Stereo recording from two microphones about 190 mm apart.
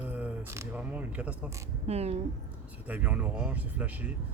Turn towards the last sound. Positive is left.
turn(degrees=-10)  # may be behind; listen again after turning